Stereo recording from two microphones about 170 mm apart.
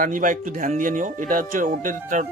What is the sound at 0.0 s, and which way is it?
Speech, 50° right (ahead or behind).